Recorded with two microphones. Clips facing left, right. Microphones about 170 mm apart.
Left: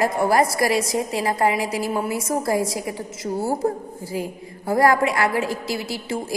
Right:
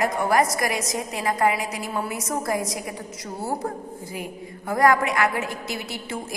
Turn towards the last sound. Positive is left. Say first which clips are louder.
# left 5 dB
turn(degrees=30)  # may be behind; listen again after turning